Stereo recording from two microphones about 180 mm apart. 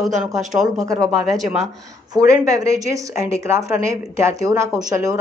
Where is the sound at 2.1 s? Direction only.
20° right (ahead or behind).